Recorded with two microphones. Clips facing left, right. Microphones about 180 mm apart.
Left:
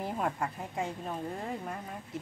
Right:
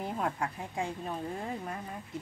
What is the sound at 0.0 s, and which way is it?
Speech, centre (ahead or behind).